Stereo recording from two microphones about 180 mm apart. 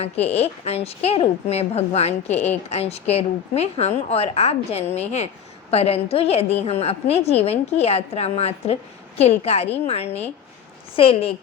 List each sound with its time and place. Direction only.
0.0 s a woman's voice: 35° left (ahead or behind)